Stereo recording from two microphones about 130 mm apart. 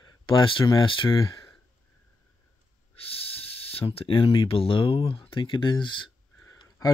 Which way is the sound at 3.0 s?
50° left (ahead or behind).